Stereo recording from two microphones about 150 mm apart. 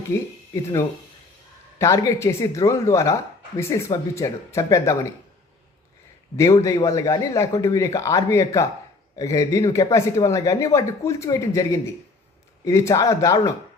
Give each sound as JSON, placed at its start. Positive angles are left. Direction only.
{"t": 0.1, "sound": "speech", "side_deg": 20}
{"t": 6.3, "sound": "speech", "side_deg": 20}